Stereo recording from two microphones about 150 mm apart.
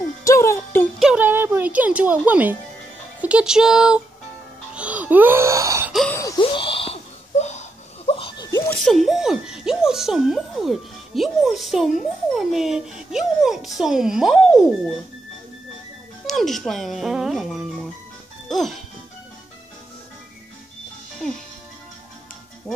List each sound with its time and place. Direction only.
0.2 s music: 20° left (ahead or behind)
0.9 s music: 5° right (ahead or behind)
3.2 s speech: 10° right (ahead or behind)
4.7 s wail: 10° right (ahead or behind)
6.0 s gasp: 20° left (ahead or behind)
6.4 s laughter: 35° left (ahead or behind)
8.6 s speech: centre (ahead or behind)
16.3 s speech: centre (ahead or behind)
21.2 s speech: 5° left (ahead or behind)